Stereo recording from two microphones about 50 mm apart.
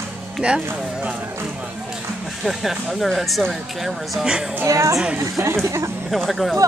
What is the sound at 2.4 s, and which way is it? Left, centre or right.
Speech, centre.